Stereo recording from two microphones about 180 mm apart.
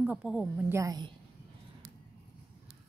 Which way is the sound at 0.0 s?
5° right (ahead or behind).